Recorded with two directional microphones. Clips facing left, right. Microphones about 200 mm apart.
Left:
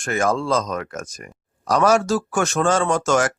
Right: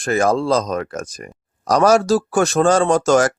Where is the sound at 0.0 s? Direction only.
35° right (ahead or behind).